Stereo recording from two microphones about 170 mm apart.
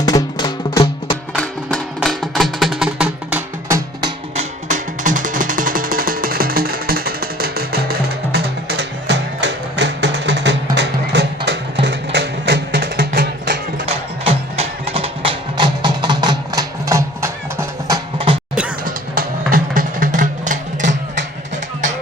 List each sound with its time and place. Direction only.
0.0 s music: 20° left (ahead or behind)
2.0 s music: centre (ahead or behind)
4.4 s music: 50° right (ahead or behind)
13.8 s music: 35° right (ahead or behind); by 18.0 s 15° right (ahead or behind)
18.9 s music: 55° right (ahead or behind)